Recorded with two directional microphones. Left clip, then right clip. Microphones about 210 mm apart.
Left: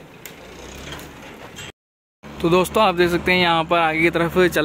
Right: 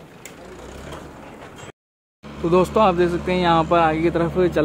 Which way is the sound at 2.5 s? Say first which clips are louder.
Right 1 dB; 5° left (ahead or behind).